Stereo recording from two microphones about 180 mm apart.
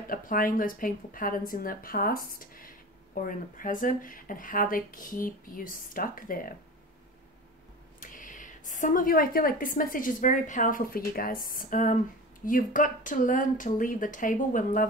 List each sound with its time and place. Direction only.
0.1 s a woman's voice: 50° left (ahead or behind)
8.0 s a woman's voice: 45° left (ahead or behind)